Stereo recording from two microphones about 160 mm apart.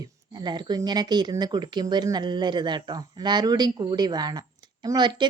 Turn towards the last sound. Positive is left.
turn(degrees=-25)  # may be behind; listen again after turning